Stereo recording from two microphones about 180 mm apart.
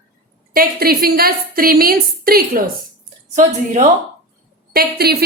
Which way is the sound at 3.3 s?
45° right (ahead or behind).